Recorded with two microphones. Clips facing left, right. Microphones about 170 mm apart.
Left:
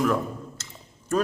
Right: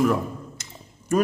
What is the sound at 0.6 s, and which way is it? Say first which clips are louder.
Squish: right 1 dB; 15° right (ahead or behind).